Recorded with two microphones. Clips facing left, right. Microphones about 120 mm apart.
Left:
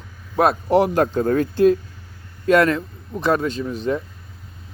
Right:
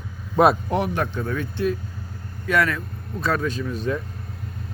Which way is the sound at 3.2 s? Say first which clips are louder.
Left 4 dB; 25° left (ahead or behind).